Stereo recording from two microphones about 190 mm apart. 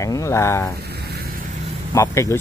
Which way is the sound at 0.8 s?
60° right (ahead or behind).